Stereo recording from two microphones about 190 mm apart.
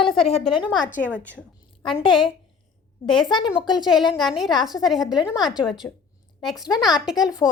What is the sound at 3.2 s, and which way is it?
Speech, 25° left (ahead or behind).